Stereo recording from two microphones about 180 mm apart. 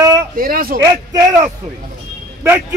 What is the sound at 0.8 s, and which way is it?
A man's voice, 20° right (ahead or behind).